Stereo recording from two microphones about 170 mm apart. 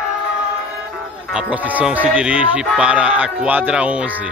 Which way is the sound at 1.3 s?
10° right (ahead or behind).